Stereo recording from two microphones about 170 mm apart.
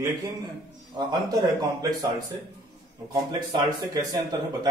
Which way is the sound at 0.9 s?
25° right (ahead or behind).